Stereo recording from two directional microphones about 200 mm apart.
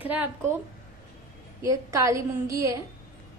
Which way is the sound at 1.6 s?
15° right (ahead or behind).